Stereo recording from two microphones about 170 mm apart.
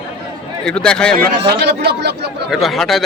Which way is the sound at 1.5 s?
70° right (ahead or behind).